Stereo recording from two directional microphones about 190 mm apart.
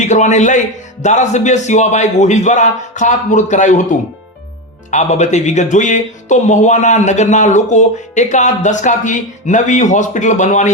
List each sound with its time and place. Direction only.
0.0 s a man's voice: 40° left (ahead or behind)
4.9 s speech: 40° left (ahead or behind)